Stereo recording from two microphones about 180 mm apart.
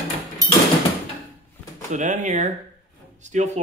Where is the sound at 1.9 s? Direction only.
45° right (ahead or behind).